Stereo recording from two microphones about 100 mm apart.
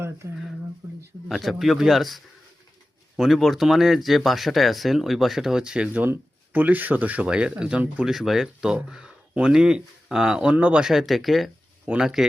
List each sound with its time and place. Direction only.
0.2 s speech: 30° right (ahead or behind)
1.3 s speech: centre (ahead or behind)